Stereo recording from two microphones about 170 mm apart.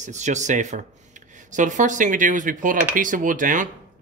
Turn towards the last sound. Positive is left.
turn(degrees=-50)  # may be behind; listen again after turning